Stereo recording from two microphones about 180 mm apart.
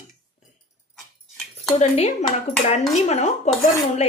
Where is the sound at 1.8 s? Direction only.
35° left (ahead or behind).